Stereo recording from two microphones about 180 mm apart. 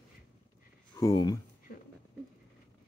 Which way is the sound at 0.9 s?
20° left (ahead or behind).